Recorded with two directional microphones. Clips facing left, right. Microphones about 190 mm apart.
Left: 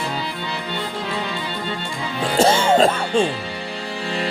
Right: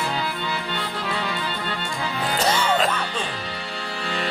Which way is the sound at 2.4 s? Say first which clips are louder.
Left 7 dB; 25° left (ahead or behind).